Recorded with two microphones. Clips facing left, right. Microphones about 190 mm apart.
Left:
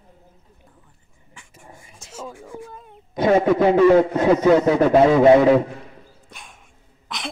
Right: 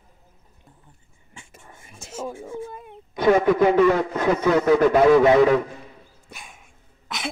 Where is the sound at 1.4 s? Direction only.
25° right (ahead or behind).